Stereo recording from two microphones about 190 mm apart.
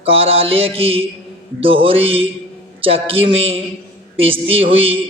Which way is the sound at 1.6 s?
30° right (ahead or behind).